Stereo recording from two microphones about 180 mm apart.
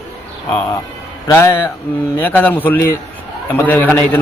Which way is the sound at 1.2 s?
15° left (ahead or behind).